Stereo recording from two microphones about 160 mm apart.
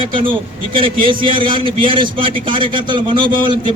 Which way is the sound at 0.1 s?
30° right (ahead or behind).